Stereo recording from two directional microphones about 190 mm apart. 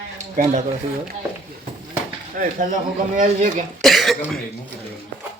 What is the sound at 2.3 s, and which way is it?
Speech, 45° right (ahead or behind).